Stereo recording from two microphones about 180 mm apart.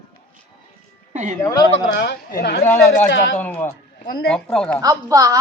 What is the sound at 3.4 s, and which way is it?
A woman's voice, 10° left (ahead or behind).